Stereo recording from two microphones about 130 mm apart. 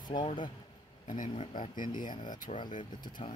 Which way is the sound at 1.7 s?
90° left.